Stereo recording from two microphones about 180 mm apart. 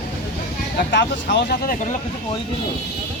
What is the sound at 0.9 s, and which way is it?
Speech, 70° left (ahead or behind).